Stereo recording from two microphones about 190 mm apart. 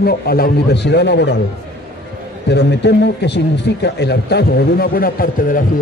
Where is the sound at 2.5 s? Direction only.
65° left (ahead or behind).